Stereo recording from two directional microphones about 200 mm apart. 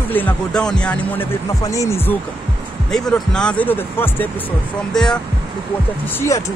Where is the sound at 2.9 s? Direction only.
5° left (ahead or behind).